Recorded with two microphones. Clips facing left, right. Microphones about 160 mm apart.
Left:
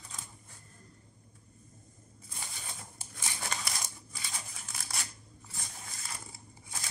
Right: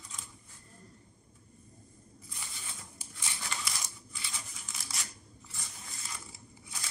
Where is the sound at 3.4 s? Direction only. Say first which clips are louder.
Left 2 dB; 50° left (ahead or behind).